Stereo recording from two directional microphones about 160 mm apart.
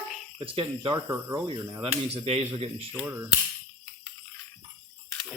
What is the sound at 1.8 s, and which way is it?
Speech, 40° right (ahead or behind).